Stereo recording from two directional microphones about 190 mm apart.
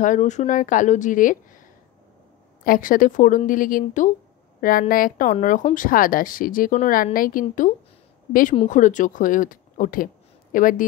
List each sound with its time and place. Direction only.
0.0 s speech: 40° left (ahead or behind)
2.6 s a woman's voice: 50° left (ahead or behind)